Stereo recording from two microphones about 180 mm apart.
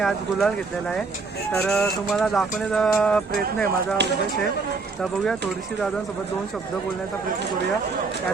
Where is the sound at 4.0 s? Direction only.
70° right (ahead or behind).